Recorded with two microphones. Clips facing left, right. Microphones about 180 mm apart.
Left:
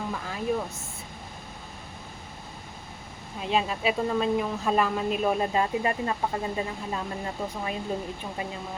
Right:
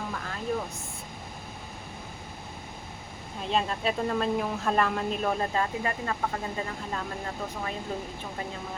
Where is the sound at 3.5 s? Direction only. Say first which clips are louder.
Left 2 dB; 5° left (ahead or behind).